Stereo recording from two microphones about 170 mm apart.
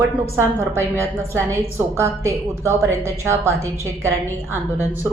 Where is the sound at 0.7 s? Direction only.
15° right (ahead or behind).